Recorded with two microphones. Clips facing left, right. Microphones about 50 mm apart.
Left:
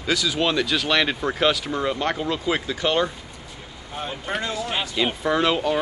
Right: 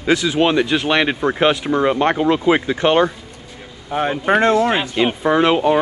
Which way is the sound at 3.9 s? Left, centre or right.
Right.